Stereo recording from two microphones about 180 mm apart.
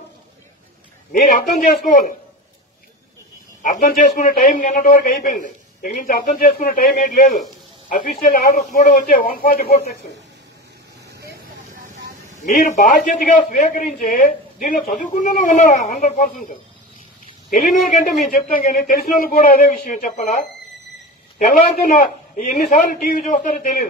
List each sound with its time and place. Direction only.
1.1 s a man's voice: 50° left (ahead or behind)
3.6 s a man's voice: 45° left (ahead or behind)
11.8 s vehicle: 40° right (ahead or behind)
12.4 s a man's voice: 40° left (ahead or behind)
17.5 s a man's voice: 50° left (ahead or behind)
21.5 s a man's voice: 45° left (ahead or behind)